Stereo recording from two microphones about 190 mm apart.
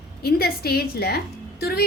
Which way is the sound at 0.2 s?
55° left (ahead or behind).